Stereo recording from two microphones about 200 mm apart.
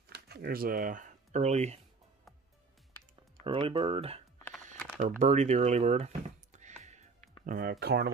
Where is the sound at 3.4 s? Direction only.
25° right (ahead or behind).